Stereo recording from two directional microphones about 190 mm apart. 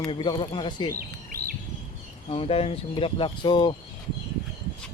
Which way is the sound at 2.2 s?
30° left (ahead or behind).